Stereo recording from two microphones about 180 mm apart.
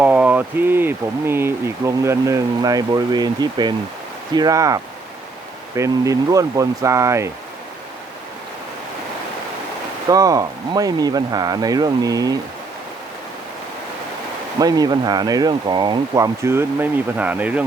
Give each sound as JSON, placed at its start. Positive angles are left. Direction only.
{"t": 0.0, "sound": "speech", "side_deg": -5}
{"t": 10.1, "sound": "speech", "side_deg": -20}
{"t": 14.6, "sound": "speech", "side_deg": -20}